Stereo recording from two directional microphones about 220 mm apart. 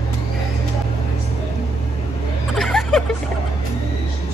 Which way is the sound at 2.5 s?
Centre (ahead or behind).